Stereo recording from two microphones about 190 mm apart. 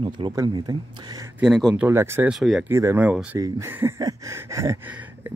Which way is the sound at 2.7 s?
15° right (ahead or behind).